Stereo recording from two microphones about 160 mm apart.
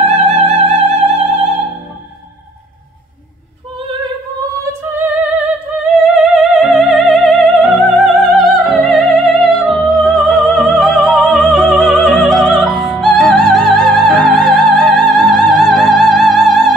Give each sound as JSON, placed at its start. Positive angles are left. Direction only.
{"t": 0.0, "sound": "music", "side_deg": -40}
{"t": 4.8, "sound": "music", "side_deg": -10}
{"t": 6.1, "sound": "opera", "side_deg": 0}